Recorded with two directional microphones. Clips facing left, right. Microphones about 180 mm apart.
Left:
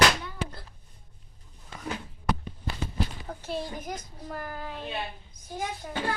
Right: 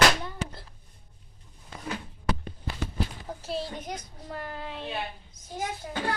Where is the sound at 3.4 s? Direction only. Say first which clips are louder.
Even; 30° right (ahead or behind).